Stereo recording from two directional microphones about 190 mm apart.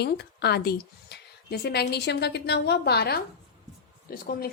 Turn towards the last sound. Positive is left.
turn(degrees=50)  # may be behind; listen again after turning